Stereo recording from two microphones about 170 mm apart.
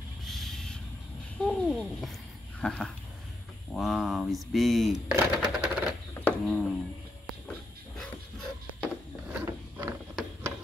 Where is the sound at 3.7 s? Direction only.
Centre (ahead or behind).